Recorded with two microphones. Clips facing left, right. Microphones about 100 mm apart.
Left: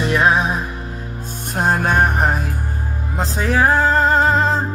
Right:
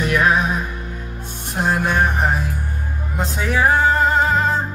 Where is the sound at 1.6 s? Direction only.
45° left (ahead or behind).